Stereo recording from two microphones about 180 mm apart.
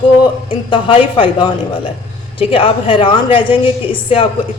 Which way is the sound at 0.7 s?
30° left (ahead or behind).